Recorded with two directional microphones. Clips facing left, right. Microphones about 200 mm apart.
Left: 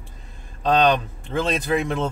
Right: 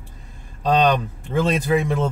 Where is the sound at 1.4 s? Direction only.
10° right (ahead or behind).